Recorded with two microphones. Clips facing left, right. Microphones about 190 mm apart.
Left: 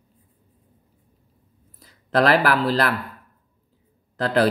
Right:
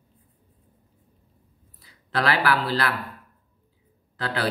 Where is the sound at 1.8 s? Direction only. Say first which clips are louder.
Left 7 dB; 45° left (ahead or behind).